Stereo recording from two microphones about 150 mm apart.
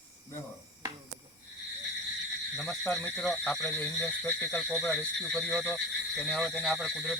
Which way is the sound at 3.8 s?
20° left (ahead or behind).